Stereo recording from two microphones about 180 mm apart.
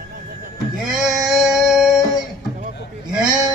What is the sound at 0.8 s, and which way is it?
Sheep, 5° right (ahead or behind).